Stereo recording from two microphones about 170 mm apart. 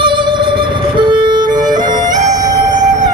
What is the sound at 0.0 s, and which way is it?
Music, 30° right (ahead or behind).